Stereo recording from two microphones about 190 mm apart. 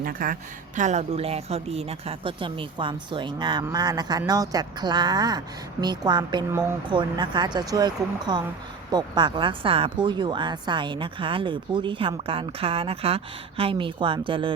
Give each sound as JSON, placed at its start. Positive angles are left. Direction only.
{"t": 0.0, "sound": "speech", "side_deg": -45}
{"t": 0.8, "sound": "speech", "side_deg": -35}